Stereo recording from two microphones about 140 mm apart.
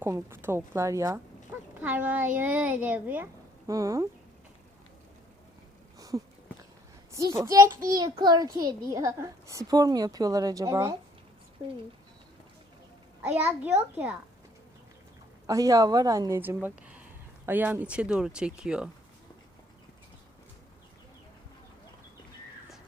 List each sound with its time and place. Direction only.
0.0 s a woman's voice: 15° right (ahead or behind)
1.8 s speech: 10° right (ahead or behind)
3.7 s a woman's voice: 25° right (ahead or behind)
6.0 s a sound: 25° right (ahead or behind)
7.3 s a woman's voice: 25° right (ahead or behind)
13.2 s speech: 10° right (ahead or behind)
15.4 s a woman's voice: 25° right (ahead or behind)
16.4 s speech: 15° right (ahead or behind)